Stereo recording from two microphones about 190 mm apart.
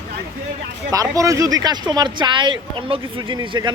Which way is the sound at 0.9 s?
15° right (ahead or behind).